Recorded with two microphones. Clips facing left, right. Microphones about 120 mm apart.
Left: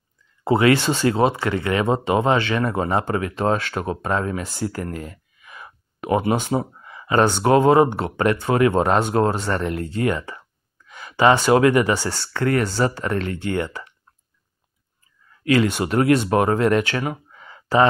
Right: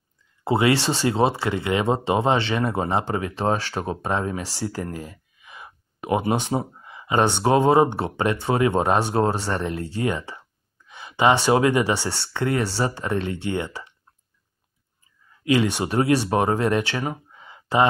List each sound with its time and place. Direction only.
0.6 s speech: 25° right (ahead or behind)
15.4 s speech: 20° right (ahead or behind)
17.4 s a sound: 20° right (ahead or behind)